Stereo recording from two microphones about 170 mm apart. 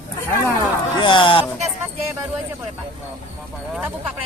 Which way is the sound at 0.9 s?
30° left (ahead or behind).